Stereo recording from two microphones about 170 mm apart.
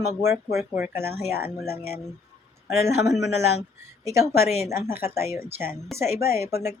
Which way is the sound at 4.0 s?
15° right (ahead or behind).